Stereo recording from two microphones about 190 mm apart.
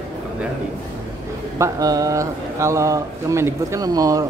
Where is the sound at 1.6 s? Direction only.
20° right (ahead or behind).